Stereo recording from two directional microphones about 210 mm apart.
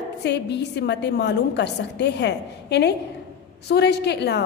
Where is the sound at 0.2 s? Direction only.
55° left (ahead or behind).